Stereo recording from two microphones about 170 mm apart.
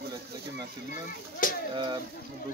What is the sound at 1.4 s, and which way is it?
Speech, 55° left (ahead or behind).